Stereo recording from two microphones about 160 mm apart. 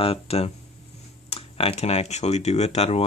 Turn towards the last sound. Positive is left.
turn(degrees=40)  # may be behind; listen again after turning